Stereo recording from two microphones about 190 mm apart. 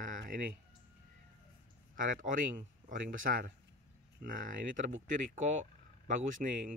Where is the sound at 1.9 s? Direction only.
45° right (ahead or behind).